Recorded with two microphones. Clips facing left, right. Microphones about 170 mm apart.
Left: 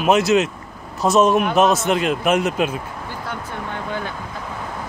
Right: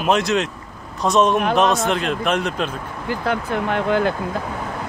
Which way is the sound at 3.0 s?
90° right.